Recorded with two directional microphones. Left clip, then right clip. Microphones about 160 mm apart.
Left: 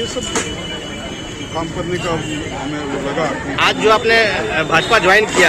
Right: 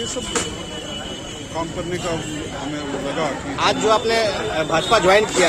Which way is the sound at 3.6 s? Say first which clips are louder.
Left 4 dB; 20° right (ahead or behind).